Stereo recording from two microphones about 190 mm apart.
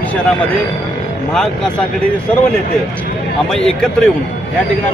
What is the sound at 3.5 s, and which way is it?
Speech, 5° left (ahead or behind).